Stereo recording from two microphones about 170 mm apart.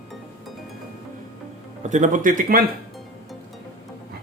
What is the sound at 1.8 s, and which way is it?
Speech, 45° right (ahead or behind).